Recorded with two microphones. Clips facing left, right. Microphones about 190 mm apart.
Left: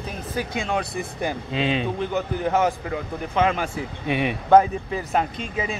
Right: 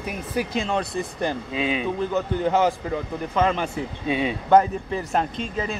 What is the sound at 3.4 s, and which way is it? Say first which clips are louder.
Speech: even; 5° left (ahead or behind).